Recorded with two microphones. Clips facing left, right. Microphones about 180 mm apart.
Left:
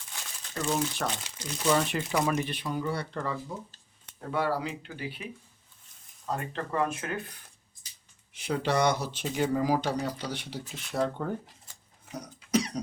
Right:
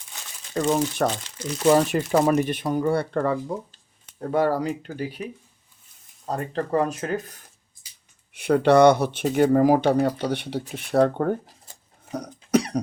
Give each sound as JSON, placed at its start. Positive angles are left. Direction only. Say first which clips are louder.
{"t": 0.5, "sound": "speech", "louder": "right 7 dB", "side_deg": -45}
{"t": 4.2, "sound": "speech", "louder": "right 7 dB", "side_deg": -45}
{"t": 8.3, "sound": "speech", "louder": "right 11 dB", "side_deg": -60}
{"t": 12.5, "sound": "cough", "louder": "right 6 dB", "side_deg": -60}